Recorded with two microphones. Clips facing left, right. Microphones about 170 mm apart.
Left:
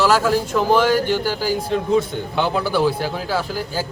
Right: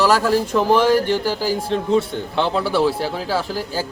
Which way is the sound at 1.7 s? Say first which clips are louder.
Even; 5° left (ahead or behind).